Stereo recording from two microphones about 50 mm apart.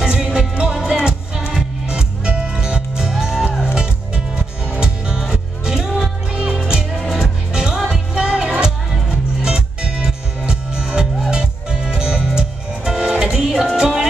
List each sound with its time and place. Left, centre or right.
0.0 s music: centre
4.7 s music: centre
5.7 s music: centre